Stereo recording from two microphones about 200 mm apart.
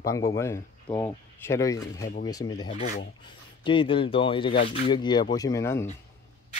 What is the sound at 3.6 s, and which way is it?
Speech, 25° left (ahead or behind).